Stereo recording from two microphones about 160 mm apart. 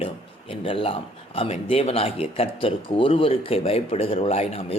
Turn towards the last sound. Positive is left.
turn(degrees=40)  # may be behind; listen again after turning